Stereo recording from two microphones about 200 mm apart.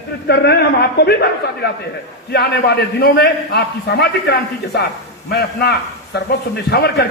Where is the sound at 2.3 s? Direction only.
55° left (ahead or behind).